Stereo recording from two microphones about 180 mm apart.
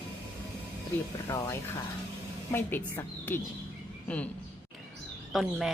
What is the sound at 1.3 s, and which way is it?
Speech, 15° left (ahead or behind).